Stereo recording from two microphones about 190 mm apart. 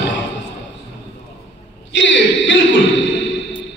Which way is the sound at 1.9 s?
70° left (ahead or behind).